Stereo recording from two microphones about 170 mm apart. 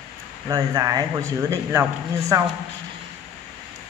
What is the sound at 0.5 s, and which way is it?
A man's voice, 20° right (ahead or behind).